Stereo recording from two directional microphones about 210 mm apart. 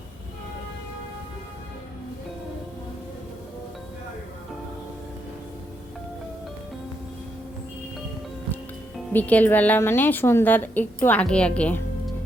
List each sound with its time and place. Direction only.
9.1 s a woman's voice: 10° left (ahead or behind)